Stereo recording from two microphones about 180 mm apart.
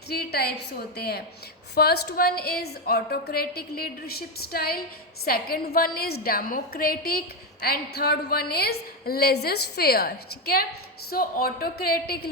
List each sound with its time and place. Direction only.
0.1 s a woman's voice: 60° left (ahead or behind)